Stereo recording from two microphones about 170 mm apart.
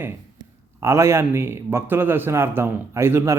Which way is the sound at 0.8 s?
15° right (ahead or behind).